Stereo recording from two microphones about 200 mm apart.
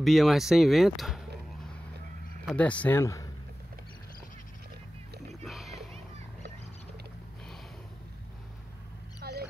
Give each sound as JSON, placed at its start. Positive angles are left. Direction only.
{"t": 0.0, "sound": "speech", "side_deg": 0}
{"t": 2.4, "sound": "speech", "side_deg": 5}
{"t": 5.4, "sound": "music", "side_deg": 0}
{"t": 9.2, "sound": "wild animals", "side_deg": -50}